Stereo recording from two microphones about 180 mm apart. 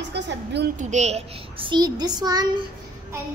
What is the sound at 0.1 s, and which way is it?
Speech, 70° right (ahead or behind).